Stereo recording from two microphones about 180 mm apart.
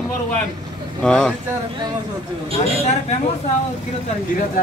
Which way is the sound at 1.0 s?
5° left (ahead or behind).